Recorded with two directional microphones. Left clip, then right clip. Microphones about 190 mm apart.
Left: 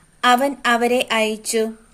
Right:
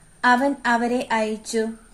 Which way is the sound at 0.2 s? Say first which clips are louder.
Left 2 dB; 55° left (ahead or behind).